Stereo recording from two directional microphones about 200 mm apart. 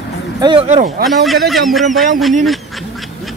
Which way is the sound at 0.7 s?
35° right (ahead or behind).